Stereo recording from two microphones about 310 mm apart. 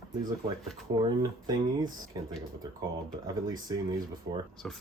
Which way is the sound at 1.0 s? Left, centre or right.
Centre.